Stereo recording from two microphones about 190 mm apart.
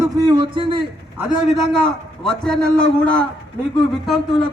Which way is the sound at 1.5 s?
5° left (ahead or behind).